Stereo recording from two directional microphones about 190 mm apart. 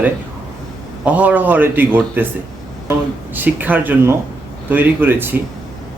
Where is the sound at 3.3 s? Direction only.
10° right (ahead or behind).